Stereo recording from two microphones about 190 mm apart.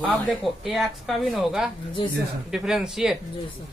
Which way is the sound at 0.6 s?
Centre (ahead or behind).